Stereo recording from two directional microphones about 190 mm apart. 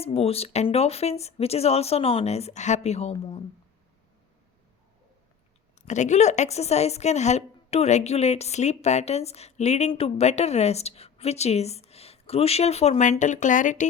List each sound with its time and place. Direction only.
0.0 s a woman's voice: 30° left (ahead or behind)
5.8 s a woman's voice: 40° left (ahead or behind)